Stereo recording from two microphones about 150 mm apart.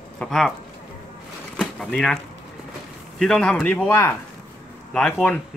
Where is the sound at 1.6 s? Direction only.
5° left (ahead or behind).